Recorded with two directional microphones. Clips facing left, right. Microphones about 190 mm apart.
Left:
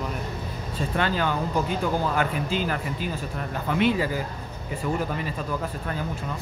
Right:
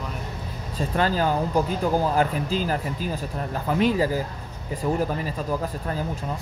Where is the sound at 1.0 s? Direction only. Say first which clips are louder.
Right 3 dB; 35° right (ahead or behind).